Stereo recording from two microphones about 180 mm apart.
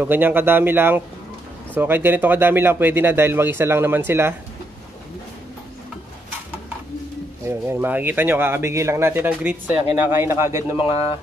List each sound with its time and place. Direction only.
0.0 s speech: 10° right (ahead or behind)
7.4 s speech: 10° right (ahead or behind)
10.8 s speech: 30° left (ahead or behind)